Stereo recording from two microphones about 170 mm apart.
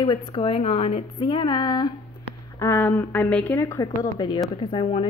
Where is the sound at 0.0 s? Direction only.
30° left (ahead or behind).